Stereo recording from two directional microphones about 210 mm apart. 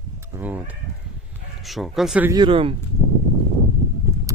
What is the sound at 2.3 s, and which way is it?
Speech, 25° right (ahead or behind).